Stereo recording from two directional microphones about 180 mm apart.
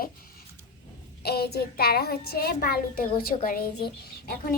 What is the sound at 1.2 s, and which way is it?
A child's voice, 60° left (ahead or behind).